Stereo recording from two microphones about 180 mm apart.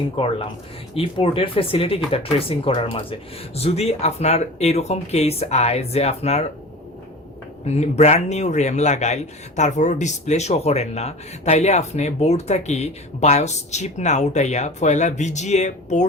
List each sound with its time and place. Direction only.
0.2 s speech: 30° left (ahead or behind)
7.6 s speech: 35° left (ahead or behind)